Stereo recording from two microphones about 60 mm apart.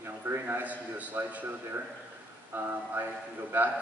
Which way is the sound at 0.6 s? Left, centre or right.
Right.